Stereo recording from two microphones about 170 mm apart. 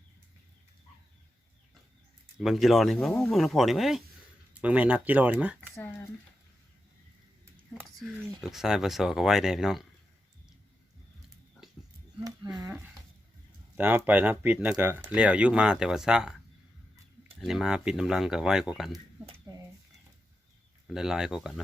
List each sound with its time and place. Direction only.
2.4 s speech: centre (ahead or behind)
5.7 s speech: 15° left (ahead or behind)
7.9 s speech: centre (ahead or behind)
12.2 s speech: 25° right (ahead or behind)
13.7 s speech: 10° right (ahead or behind)
17.4 s speech: 5° right (ahead or behind)
19.5 s a sound: 20° right (ahead or behind)
20.8 s speech: 5° right (ahead or behind)